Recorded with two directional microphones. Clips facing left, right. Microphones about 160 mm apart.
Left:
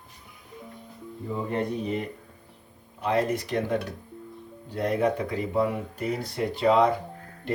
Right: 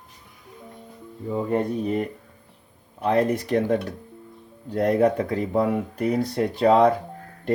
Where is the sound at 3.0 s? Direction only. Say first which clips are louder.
Right 4 dB; 45° right (ahead or behind).